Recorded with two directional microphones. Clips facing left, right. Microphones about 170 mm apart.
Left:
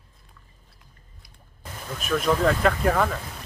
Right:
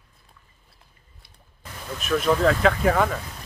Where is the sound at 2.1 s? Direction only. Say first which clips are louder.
Right 2 dB; centre (ahead or behind).